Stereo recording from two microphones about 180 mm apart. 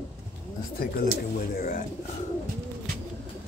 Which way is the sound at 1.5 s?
50° left (ahead or behind).